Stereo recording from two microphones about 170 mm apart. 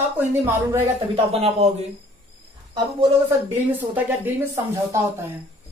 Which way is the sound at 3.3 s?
10° right (ahead or behind).